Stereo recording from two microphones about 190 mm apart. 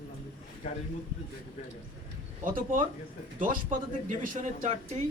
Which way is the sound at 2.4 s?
45° right (ahead or behind).